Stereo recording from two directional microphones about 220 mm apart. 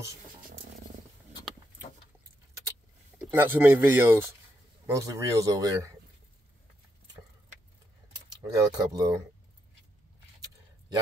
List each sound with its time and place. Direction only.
3.2 s speech: 10° right (ahead or behind)
8.5 s speech: 15° right (ahead or behind)